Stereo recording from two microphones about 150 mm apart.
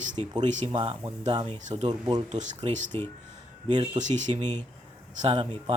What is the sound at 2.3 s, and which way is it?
Speech, 55° right (ahead or behind).